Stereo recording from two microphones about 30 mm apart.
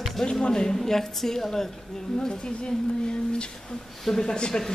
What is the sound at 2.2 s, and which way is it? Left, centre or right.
Speech, left.